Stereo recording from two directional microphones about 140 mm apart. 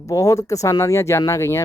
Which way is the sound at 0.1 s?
25° left (ahead or behind).